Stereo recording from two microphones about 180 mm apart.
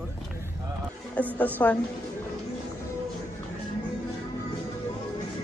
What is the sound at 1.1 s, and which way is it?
Speech, 10° left (ahead or behind).